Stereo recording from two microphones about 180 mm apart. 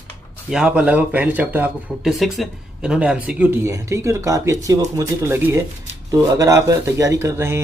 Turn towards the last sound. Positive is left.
turn(degrees=-15)  # may be behind; listen again after turning